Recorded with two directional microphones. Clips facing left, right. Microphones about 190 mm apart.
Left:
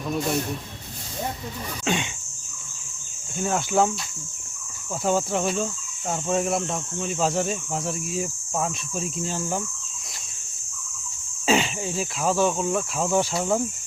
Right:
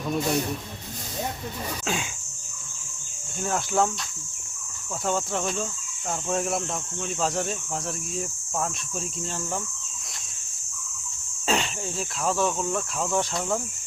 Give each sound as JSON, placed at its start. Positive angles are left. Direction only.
{"t": 0.1, "sound": "speech", "side_deg": 0}
{"t": 1.8, "sound": "speech", "side_deg": 0}
{"t": 3.3, "sound": "speech", "side_deg": 0}
{"t": 5.0, "sound": "speech", "side_deg": 5}
{"t": 11.4, "sound": "speech", "side_deg": 0}